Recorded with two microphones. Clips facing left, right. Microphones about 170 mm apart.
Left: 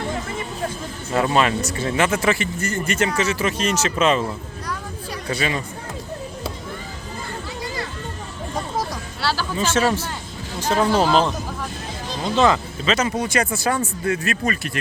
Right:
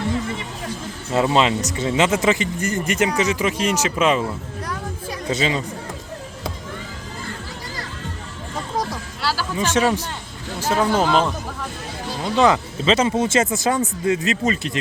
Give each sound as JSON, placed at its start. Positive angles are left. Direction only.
{"t": 1.1, "sound": "speech", "side_deg": -20}
{"t": 5.3, "sound": "speech", "side_deg": -20}
{"t": 8.8, "sound": "music", "side_deg": 0}
{"t": 9.6, "sound": "speech", "side_deg": -15}
{"t": 10.8, "sound": "speech", "side_deg": 5}
{"t": 12.4, "sound": "speech", "side_deg": -20}